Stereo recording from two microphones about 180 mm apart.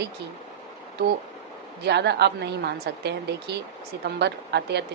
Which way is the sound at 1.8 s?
70° right (ahead or behind).